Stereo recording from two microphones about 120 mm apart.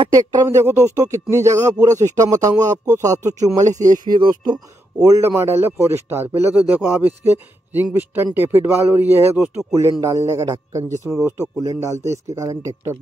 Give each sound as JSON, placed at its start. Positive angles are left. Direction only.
{"t": 0.1, "sound": "speech", "side_deg": -30}
{"t": 3.6, "sound": "speech", "side_deg": -90}
{"t": 4.0, "sound": "speech", "side_deg": -40}